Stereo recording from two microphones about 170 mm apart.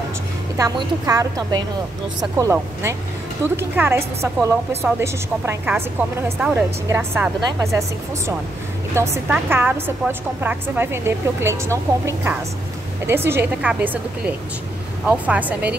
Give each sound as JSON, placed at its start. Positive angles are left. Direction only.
{"t": 0.6, "sound": "a woman's voice", "side_deg": -20}
{"t": 8.9, "sound": "a woman's voice", "side_deg": -15}